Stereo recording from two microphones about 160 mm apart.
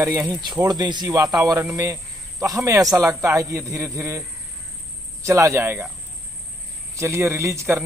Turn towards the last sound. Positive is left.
turn(degrees=-15)  # may be behind; listen again after turning